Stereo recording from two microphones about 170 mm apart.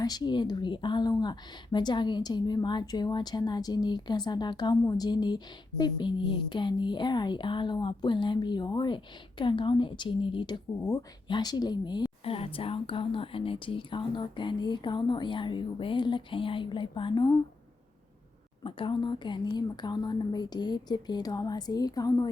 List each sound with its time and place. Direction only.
0.0 s speech: 25° left (ahead or behind)
18.6 s speech: 30° left (ahead or behind)